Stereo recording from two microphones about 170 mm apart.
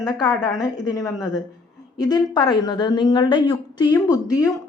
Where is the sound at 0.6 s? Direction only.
20° left (ahead or behind).